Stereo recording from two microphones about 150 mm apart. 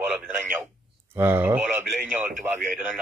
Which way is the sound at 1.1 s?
15° right (ahead or behind).